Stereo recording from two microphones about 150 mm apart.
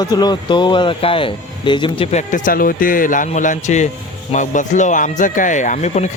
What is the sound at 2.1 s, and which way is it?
Speech, 60° left (ahead or behind).